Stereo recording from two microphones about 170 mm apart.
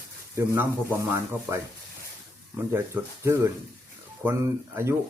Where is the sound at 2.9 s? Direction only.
10° right (ahead or behind).